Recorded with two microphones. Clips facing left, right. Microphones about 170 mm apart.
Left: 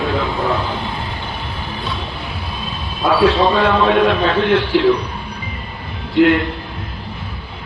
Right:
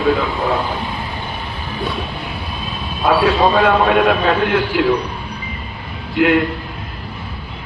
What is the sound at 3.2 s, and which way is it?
A man's voice, 50° right (ahead or behind).